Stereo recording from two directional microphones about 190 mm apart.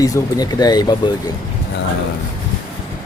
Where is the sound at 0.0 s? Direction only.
20° left (ahead or behind).